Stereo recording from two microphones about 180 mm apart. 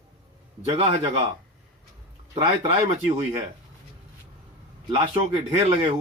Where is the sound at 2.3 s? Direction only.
35° right (ahead or behind).